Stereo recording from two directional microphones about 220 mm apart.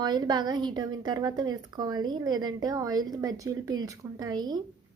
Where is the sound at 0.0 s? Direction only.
20° right (ahead or behind).